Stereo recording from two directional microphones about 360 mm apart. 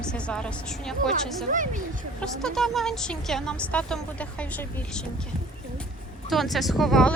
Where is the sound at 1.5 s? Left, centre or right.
Right.